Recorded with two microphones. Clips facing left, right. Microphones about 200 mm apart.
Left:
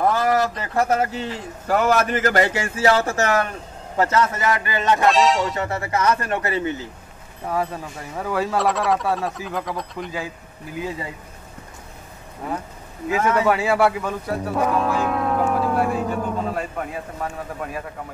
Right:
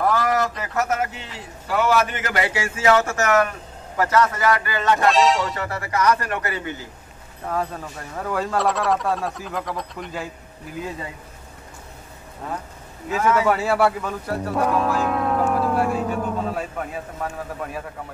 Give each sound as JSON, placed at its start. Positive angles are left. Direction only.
{"t": 0.0, "sound": "speech", "side_deg": 25}
{"t": 5.0, "sound": "speech", "side_deg": 0}
{"t": 5.6, "sound": "speech", "side_deg": 25}
{"t": 7.4, "sound": "speech", "side_deg": 5}
{"t": 12.4, "sound": "speech", "side_deg": 10}
{"t": 13.5, "sound": "speech", "side_deg": 0}